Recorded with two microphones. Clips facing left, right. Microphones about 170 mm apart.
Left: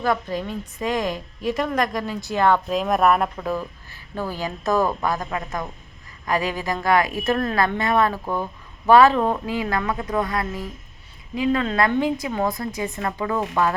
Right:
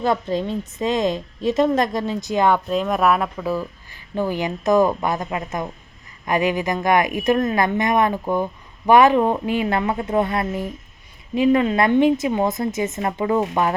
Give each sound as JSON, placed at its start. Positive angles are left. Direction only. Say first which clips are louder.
{"t": 0.0, "sound": "a woman's voice", "louder": "right 3 dB", "side_deg": -25}
{"t": 2.6, "sound": "speech", "louder": "even", "side_deg": 0}
{"t": 3.8, "sound": "a woman's voice", "louder": "right 6 dB", "side_deg": -15}